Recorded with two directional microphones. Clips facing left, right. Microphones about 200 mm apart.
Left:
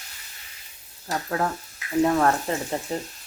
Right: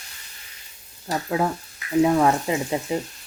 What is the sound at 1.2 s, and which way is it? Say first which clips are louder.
Speech: right 3 dB; 10° right (ahead or behind).